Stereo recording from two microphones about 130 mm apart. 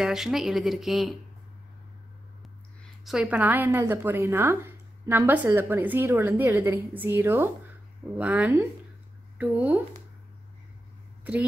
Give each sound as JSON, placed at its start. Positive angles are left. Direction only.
{"t": 0.0, "sound": "speech", "side_deg": -5}
{"t": 2.4, "sound": "a woman's voice", "side_deg": 0}